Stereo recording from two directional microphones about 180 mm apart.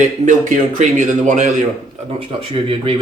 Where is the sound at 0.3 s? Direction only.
45° right (ahead or behind).